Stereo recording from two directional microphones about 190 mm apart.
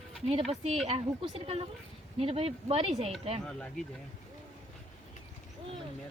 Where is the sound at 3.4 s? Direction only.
5° left (ahead or behind).